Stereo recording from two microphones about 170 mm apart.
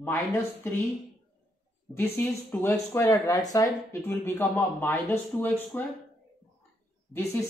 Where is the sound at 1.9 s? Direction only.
10° left (ahead or behind).